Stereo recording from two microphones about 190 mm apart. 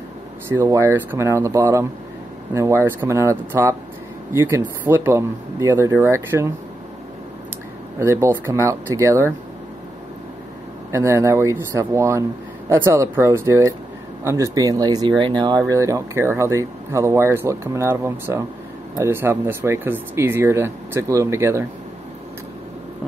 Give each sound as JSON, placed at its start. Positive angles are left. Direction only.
{"t": 0.5, "sound": "speech", "side_deg": -15}
{"t": 8.0, "sound": "speech", "side_deg": -15}
{"t": 10.9, "sound": "speech", "side_deg": -15}